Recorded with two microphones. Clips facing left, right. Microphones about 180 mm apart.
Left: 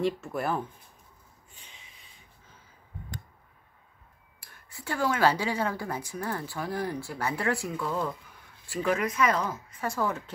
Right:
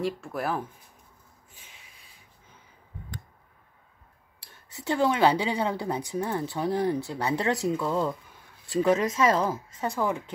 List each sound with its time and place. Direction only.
0.0 s speech: centre (ahead or behind)
4.5 s a woman's voice: 20° right (ahead or behind)
9.8 s speech: 15° right (ahead or behind)